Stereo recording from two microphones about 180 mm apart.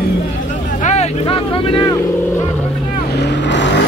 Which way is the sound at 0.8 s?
40° left (ahead or behind).